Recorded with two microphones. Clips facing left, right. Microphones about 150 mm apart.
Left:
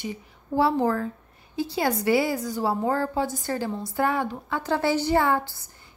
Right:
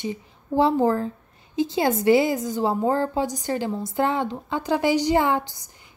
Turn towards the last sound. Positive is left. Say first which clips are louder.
# right 1 dB
turn(degrees=-20)  # may be behind; listen again after turning